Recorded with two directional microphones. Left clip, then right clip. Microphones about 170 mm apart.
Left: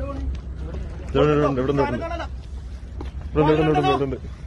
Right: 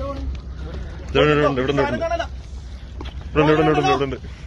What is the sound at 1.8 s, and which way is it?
Speech, 40° right (ahead or behind).